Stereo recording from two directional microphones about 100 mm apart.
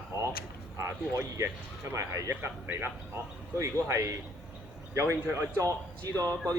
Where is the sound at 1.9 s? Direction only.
25° right (ahead or behind).